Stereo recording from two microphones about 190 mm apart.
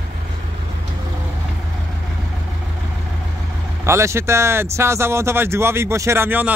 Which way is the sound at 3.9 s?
15° right (ahead or behind).